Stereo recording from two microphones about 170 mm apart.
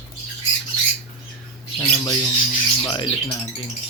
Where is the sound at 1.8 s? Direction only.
20° left (ahead or behind).